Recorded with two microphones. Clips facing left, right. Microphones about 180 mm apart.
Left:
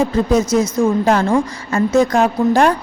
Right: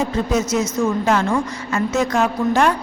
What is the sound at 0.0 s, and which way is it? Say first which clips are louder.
A woman's voice: left 5 dB; 35° left (ahead or behind).